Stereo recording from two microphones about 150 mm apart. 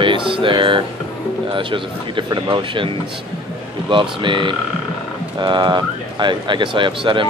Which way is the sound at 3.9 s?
35° right (ahead or behind).